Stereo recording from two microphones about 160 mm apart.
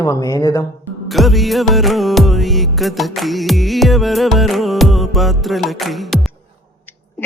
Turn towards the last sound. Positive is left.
turn(degrees=0)  # may be behind; listen again after turning